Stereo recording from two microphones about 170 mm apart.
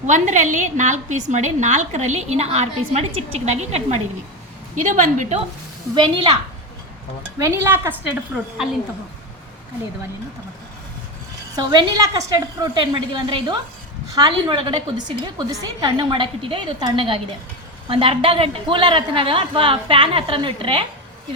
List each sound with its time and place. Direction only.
0.1 s a woman's voice: 45° right (ahead or behind)
5.9 s a woman's voice: 25° right (ahead or behind)
7.3 s speech: 15° right (ahead or behind)
11.5 s a woman's voice: 25° right (ahead or behind)